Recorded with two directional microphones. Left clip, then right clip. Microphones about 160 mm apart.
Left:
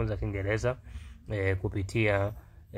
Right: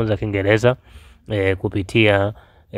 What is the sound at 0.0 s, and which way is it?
Speech, 50° right (ahead or behind).